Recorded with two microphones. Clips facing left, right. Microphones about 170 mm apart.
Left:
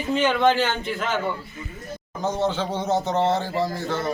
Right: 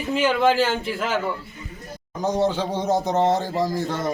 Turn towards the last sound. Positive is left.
turn(degrees=-15)  # may be behind; listen again after turning